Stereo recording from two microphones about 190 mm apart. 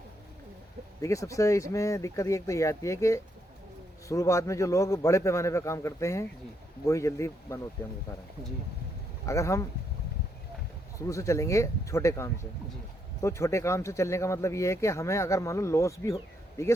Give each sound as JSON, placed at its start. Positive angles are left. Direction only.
{"t": 1.0, "sound": "a man's voice", "side_deg": 15}
{"t": 9.2, "sound": "a man's voice", "side_deg": 15}
{"t": 11.0, "sound": "a man's voice", "side_deg": 15}